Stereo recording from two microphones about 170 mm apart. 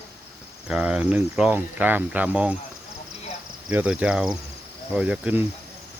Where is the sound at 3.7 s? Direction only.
10° right (ahead or behind).